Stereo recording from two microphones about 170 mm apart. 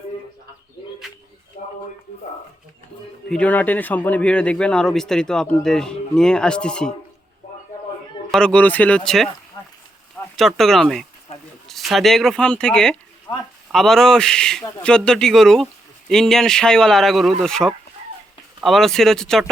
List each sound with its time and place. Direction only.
1.6 s a sound: 40° left (ahead or behind)
3.2 s speech: 5° left (ahead or behind)
8.3 s speech: 5° left (ahead or behind)
13.3 s speech: 25° left (ahead or behind)
13.7 s speech: 5° left (ahead or behind)